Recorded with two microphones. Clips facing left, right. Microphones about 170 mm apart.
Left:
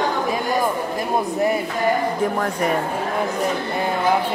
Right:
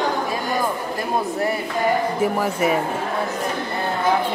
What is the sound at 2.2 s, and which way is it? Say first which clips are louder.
Speech: right 1 dB; 5° right (ahead or behind).